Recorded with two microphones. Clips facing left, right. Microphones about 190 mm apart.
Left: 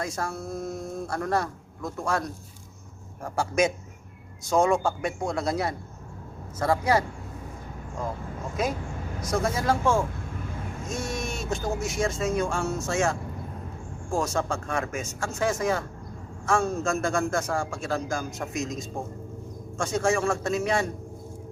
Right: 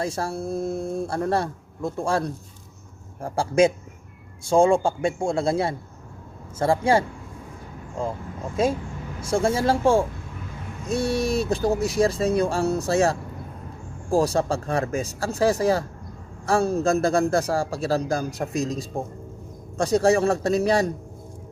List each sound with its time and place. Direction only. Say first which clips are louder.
0.0 s a man's voice: right 4 dB; 30° right (ahead or behind)
8.6 s a man's voice: right 6 dB; 30° right (ahead or behind)